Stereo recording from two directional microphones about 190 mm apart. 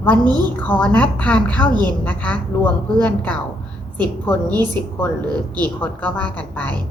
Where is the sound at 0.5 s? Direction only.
10° left (ahead or behind).